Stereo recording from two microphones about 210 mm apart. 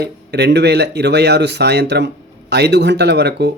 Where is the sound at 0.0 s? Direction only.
50° right (ahead or behind).